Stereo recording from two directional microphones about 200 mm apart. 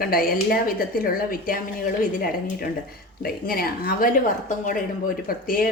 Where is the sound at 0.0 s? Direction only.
45° left (ahead or behind).